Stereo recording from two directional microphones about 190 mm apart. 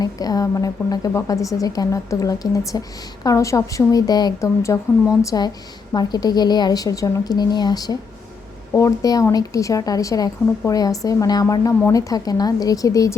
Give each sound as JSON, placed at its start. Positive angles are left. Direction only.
{"t": 0.0, "sound": "a woman's voice", "side_deg": 20}